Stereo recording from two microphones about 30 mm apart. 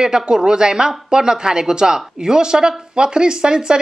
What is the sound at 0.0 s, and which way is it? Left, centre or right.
Speech, right.